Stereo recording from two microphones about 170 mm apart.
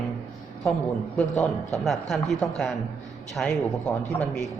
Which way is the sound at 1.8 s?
Centre (ahead or behind).